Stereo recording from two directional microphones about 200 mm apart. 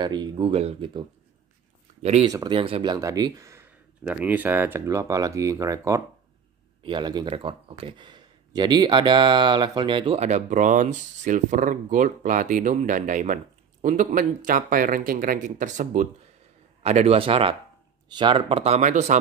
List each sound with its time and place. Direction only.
0.0 s speech: 20° right (ahead or behind)
2.2 s speech: 20° right (ahead or behind); by 19.1 s 35° right (ahead or behind)